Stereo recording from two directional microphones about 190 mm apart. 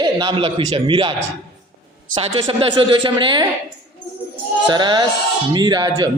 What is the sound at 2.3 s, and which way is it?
A man's voice, 25° right (ahead or behind).